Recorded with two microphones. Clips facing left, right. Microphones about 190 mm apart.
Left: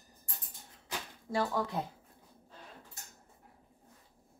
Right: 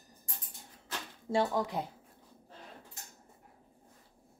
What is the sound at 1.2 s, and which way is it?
Speech, 20° right (ahead or behind).